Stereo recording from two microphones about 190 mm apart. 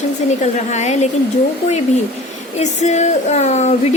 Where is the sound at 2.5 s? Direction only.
35° left (ahead or behind).